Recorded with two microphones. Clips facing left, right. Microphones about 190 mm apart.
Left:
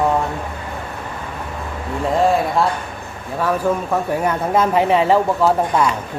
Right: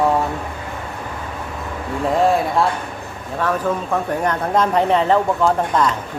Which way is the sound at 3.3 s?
10° left (ahead or behind).